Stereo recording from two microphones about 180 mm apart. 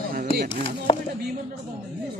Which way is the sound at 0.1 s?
55° right (ahead or behind).